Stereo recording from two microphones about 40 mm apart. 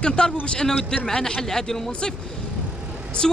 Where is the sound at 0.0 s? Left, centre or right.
Left.